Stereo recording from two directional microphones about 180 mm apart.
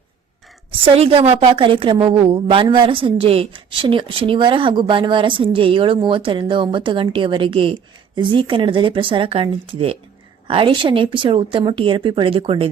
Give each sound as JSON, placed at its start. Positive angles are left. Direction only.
{"t": 0.7, "sound": "a woman's voice", "side_deg": -30}